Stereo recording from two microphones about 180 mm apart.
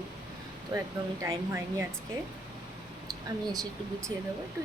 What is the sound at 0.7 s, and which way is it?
Speech, 20° right (ahead or behind).